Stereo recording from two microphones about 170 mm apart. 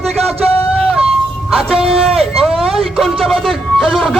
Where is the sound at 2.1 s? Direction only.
Centre (ahead or behind).